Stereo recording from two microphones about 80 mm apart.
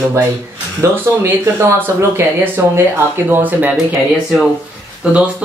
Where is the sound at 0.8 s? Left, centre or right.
Right.